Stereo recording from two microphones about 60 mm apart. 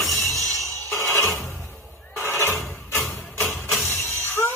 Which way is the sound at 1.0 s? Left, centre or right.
Left.